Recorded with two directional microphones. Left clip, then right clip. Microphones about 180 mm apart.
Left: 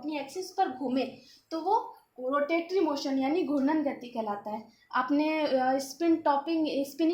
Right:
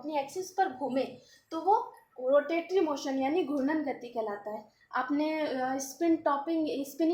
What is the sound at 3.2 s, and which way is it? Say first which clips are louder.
A woman's voice: left 1 dB; 50° left (ahead or behind).